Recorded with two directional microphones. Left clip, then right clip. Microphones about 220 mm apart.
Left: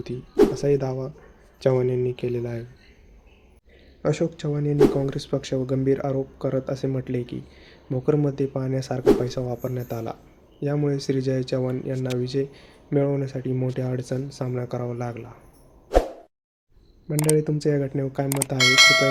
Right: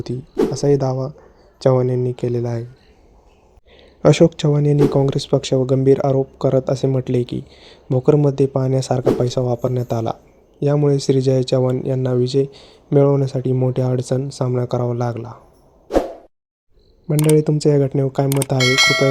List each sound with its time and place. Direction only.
0.5 s speech: 30° right (ahead or behind)
4.0 s speech: 40° right (ahead or behind)
17.3 s speech: 35° right (ahead or behind)
18.5 s speech: centre (ahead or behind)